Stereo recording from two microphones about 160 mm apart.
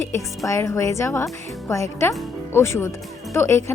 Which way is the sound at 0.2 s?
20° left (ahead or behind).